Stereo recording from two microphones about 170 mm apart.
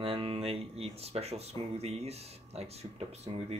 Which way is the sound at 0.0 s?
35° right (ahead or behind).